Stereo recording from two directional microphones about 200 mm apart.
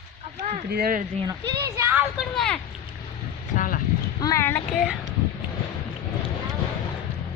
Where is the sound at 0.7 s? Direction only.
45° right (ahead or behind).